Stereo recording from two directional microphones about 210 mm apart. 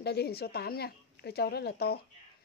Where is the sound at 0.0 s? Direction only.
50° left (ahead or behind).